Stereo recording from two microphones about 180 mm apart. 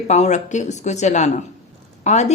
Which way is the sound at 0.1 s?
40° left (ahead or behind).